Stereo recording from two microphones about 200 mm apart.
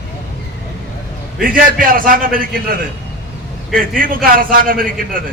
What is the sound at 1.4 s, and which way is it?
A man's voice, 45° right (ahead or behind).